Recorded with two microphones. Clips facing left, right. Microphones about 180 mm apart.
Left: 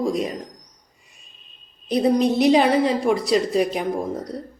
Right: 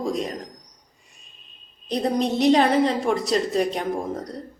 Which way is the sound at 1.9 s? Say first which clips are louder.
Left 4 dB; 5° left (ahead or behind).